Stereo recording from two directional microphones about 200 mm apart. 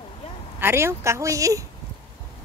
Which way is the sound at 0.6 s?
10° right (ahead or behind).